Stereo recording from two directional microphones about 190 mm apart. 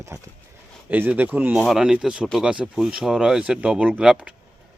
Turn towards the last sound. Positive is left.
turn(degrees=-5)  # may be behind; listen again after turning